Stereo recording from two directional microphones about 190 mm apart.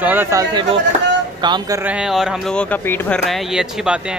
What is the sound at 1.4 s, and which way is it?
Speech, 25° right (ahead or behind).